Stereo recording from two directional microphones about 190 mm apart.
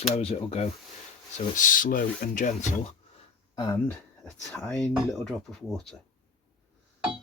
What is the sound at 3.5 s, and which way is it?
Speech, 20° left (ahead or behind).